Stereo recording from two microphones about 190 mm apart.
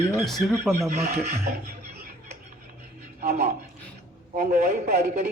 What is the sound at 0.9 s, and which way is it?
Speech, 35° right (ahead or behind).